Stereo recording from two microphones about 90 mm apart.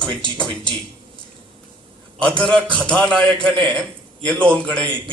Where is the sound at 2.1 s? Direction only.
10° left (ahead or behind).